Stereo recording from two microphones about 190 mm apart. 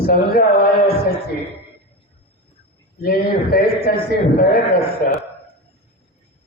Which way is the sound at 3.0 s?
55° left (ahead or behind).